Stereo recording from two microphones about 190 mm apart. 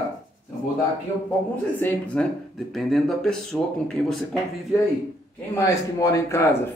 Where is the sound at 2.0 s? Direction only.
5° left (ahead or behind).